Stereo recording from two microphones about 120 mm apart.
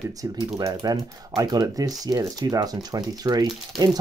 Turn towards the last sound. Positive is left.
turn(degrees=-30)  # may be behind; listen again after turning